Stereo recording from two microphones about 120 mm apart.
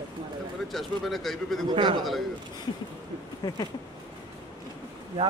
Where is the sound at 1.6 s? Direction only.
40° right (ahead or behind).